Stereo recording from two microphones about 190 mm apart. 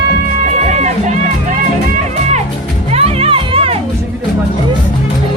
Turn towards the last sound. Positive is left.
turn(degrees=-30)  # may be behind; listen again after turning